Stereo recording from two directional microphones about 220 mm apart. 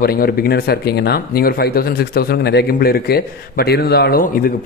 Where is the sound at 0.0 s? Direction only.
45° left (ahead or behind).